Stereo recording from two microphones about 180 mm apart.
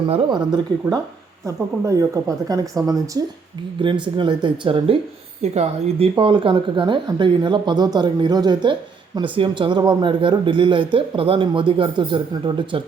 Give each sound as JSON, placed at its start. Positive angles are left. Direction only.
{"t": 0.1, "sound": "speech", "side_deg": -25}